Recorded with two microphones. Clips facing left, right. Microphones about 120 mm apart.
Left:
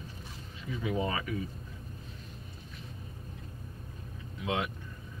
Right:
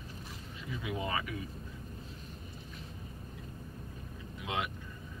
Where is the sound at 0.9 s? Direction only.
35° left (ahead or behind).